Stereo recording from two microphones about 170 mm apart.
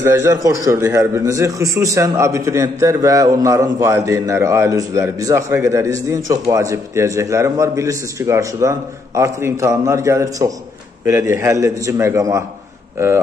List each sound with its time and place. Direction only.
0.0 s a man's voice: 15° right (ahead or behind)